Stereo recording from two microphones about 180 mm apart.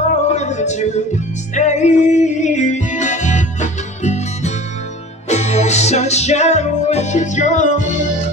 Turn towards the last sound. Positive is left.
turn(degrees=40)  # may be behind; listen again after turning